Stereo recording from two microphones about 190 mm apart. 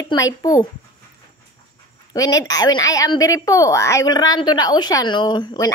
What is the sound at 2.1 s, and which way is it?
A woman's voice, 20° left (ahead or behind).